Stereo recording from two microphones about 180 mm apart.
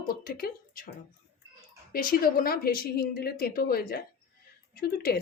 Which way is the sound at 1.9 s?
50° left (ahead or behind).